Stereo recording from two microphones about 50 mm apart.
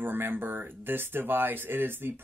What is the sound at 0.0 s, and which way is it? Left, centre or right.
Speech, right.